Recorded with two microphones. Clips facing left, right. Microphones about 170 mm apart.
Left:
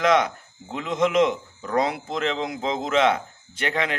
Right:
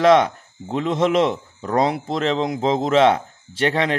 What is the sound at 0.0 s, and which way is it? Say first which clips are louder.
A man's voice: right 6 dB; 35° right (ahead or behind).